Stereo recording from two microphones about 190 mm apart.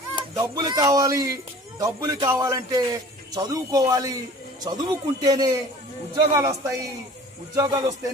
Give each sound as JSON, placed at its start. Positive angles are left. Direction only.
{"t": 0.4, "sound": "a man's voice", "side_deg": -20}